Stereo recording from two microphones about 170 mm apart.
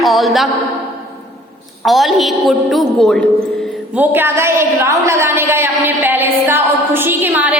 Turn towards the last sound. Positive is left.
turn(degrees=-10)  # may be behind; listen again after turning